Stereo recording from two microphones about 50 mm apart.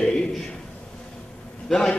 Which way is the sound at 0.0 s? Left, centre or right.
Centre.